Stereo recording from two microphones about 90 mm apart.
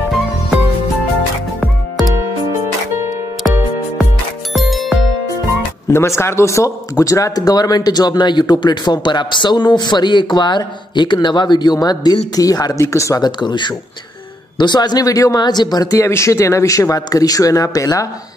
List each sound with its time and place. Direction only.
4.6 s music: centre (ahead or behind)
5.9 s a man's voice: 30° left (ahead or behind)
13.2 s a man's voice: 55° left (ahead or behind); by 15.4 s 40° left (ahead or behind)
15.4 s a man's voice: 50° left (ahead or behind)
16.0 s speech: 30° left (ahead or behind)